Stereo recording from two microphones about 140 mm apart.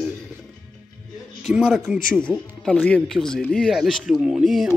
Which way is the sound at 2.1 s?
10° left (ahead or behind).